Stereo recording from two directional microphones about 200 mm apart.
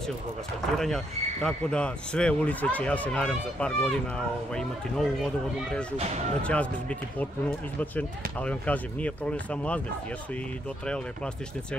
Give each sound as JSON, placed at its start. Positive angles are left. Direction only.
{"t": 0.7, "sound": "a man's voice", "side_deg": 0}
{"t": 5.9, "sound": "speech", "side_deg": -35}
{"t": 6.4, "sound": "speech", "side_deg": 5}